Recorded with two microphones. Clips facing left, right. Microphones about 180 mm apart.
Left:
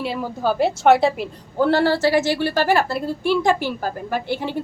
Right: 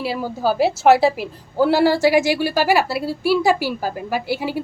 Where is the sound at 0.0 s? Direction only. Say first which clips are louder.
Right 1 dB; 5° right (ahead or behind).